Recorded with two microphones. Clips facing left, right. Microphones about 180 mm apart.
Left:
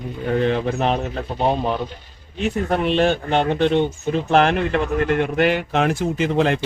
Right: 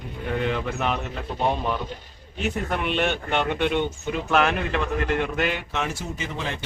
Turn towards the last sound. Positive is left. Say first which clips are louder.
# left 12 dB
turn(degrees=65)  # may be behind; listen again after turning